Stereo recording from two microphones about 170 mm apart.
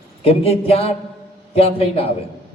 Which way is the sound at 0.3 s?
35° left (ahead or behind).